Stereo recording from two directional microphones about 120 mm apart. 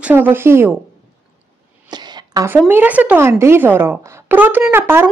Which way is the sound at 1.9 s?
35° right (ahead or behind).